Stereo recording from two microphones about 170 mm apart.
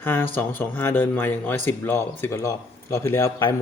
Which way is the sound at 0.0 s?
10° left (ahead or behind).